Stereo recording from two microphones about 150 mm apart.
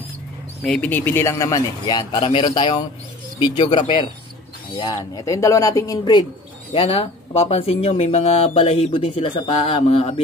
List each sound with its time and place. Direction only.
0.7 s a man's voice: 10° left (ahead or behind); by 6.2 s 25° left (ahead or behind)
6.7 s speech: 40° left (ahead or behind)